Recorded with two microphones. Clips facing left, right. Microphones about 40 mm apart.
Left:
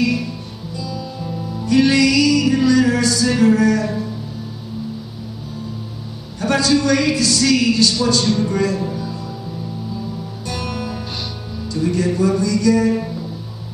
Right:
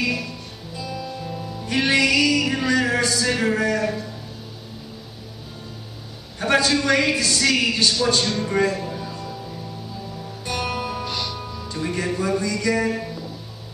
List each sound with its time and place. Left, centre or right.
0.7 s music: right
6.4 s a man's voice: right
8.1 s a sound: right
8.5 s a man's voice: right
10.4 s music: right
11.7 s speech: right
12.1 s a sound: right